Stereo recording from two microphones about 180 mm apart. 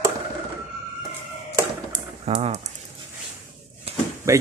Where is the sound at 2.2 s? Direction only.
35° right (ahead or behind).